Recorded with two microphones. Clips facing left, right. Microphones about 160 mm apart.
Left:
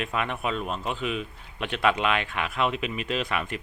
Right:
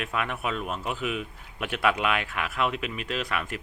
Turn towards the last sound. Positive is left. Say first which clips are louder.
# left 2 dB
turn(degrees=0)  # may be behind; listen again after turning